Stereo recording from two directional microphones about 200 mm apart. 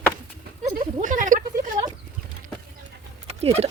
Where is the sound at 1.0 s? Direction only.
40° right (ahead or behind).